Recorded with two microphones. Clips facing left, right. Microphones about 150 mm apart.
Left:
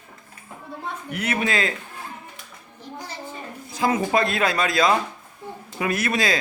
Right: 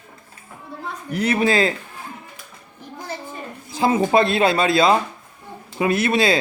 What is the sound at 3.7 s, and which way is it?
Speech, 25° right (ahead or behind).